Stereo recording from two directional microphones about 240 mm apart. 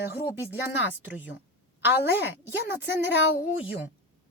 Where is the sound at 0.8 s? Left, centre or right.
Left.